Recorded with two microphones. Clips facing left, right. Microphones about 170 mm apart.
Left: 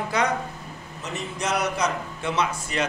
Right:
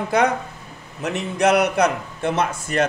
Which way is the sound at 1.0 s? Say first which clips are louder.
Right 10 dB; 65° right (ahead or behind).